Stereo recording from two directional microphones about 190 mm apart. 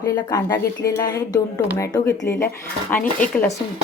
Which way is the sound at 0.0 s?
20° left (ahead or behind).